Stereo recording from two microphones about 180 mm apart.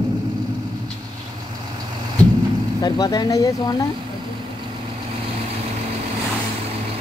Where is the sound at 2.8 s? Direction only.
20° left (ahead or behind).